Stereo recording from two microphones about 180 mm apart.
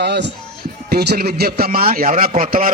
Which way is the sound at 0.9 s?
60° right (ahead or behind).